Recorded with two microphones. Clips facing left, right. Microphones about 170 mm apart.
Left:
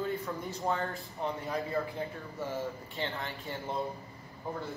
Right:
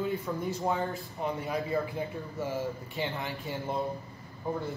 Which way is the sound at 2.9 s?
10° right (ahead or behind).